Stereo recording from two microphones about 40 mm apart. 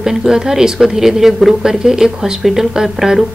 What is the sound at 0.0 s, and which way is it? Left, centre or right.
A woman's voice, centre.